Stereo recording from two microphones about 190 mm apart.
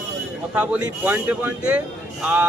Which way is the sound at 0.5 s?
5° right (ahead or behind).